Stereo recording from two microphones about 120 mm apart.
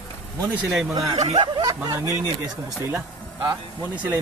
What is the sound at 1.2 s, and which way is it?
Speech, 35° right (ahead or behind).